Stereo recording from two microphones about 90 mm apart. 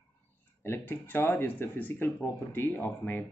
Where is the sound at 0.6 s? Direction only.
25° left (ahead or behind).